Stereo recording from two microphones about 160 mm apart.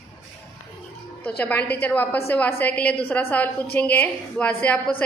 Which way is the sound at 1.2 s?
10° left (ahead or behind).